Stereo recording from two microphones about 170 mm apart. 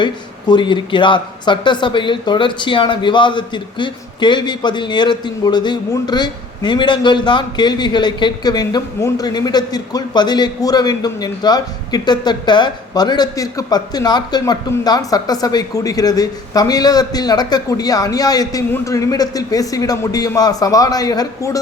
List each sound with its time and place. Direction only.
0.0 s speech: 25° left (ahead or behind)